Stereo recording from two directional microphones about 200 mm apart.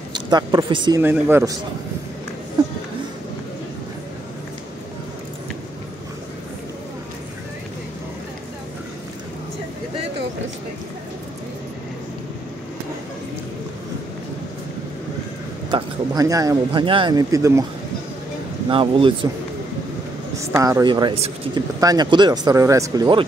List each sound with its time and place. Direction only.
0.1 s speech: 20° right (ahead or behind)
1.0 s speech: 10° right (ahead or behind)
15.7 s speech: 15° right (ahead or behind)
18.7 s speech: 25° right (ahead or behind)
20.6 s speech: 20° right (ahead or behind)